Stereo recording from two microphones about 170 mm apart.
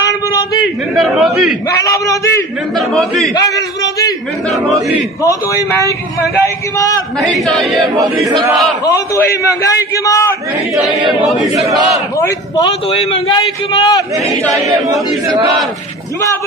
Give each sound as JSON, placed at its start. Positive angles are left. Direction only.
{"t": 0.0, "sound": "a sound", "side_deg": 20}
{"t": 0.9, "sound": "speech", "side_deg": 0}
{"t": 1.8, "sound": "a man's voice", "side_deg": 20}
{"t": 2.9, "sound": "speech", "side_deg": 0}
{"t": 3.3, "sound": "a sound", "side_deg": 20}
{"t": 5.2, "sound": "a man's voice", "side_deg": 20}
{"t": 7.2, "sound": "speech", "side_deg": 0}
{"t": 8.8, "sound": "a man's voice", "side_deg": 20}
{"t": 11.6, "sound": "battle cry", "side_deg": -20}
{"t": 12.2, "sound": "a man's voice", "side_deg": 20}